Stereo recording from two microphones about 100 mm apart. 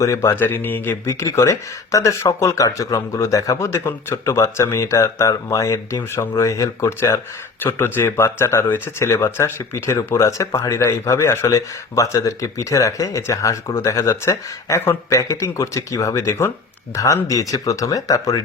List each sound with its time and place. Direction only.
0.0 s speech: 30° left (ahead or behind)